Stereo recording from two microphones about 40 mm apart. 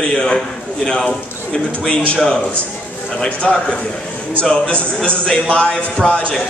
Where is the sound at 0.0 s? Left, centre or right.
Left.